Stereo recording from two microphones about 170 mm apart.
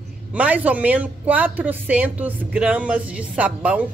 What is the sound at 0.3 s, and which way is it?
A woman's voice, 10° right (ahead or behind).